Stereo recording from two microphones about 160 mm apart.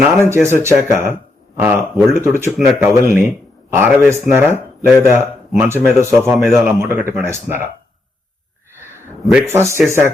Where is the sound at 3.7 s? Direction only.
15° right (ahead or behind).